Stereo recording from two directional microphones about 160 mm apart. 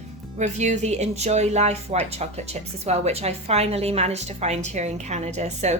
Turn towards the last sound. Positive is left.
turn(degrees=-45)  # may be behind; listen again after turning